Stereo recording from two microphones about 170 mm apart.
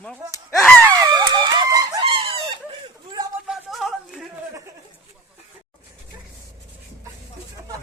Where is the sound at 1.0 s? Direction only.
20° right (ahead or behind).